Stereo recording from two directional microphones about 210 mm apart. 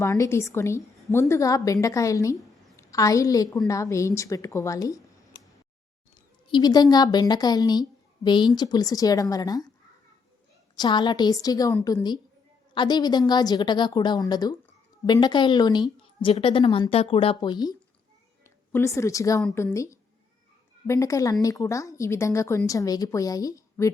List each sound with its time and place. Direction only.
0.0 s a woman's voice: 10° left (ahead or behind)
6.5 s a woman's voice: 20° left (ahead or behind)
10.8 s a woman's voice: 20° left (ahead or behind)